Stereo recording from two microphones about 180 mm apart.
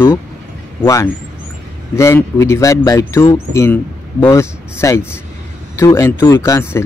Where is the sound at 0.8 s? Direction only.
15° left (ahead or behind).